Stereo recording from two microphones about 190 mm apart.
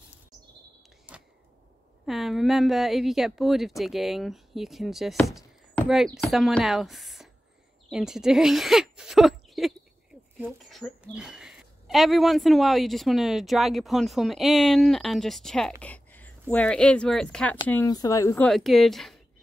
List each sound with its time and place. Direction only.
1.1 s a sound: 10° right (ahead or behind)
2.0 s a woman's voice: centre (ahead or behind)
17.6 s speech: 15° left (ahead or behind)
18.5 s a woman's voice: centre (ahead or behind)